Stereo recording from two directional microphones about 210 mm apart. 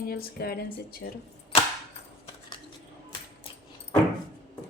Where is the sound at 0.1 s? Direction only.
45° left (ahead or behind).